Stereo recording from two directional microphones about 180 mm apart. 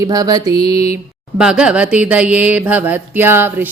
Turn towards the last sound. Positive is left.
turn(degrees=-10)  # may be behind; listen again after turning